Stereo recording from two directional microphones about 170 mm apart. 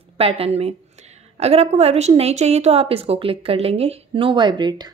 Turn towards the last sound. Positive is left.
turn(degrees=-25)  # may be behind; listen again after turning